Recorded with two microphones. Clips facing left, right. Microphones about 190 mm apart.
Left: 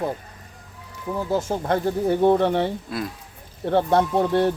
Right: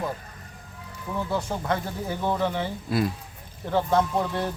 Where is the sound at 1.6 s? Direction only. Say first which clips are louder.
Left 7 dB; 40° left (ahead or behind).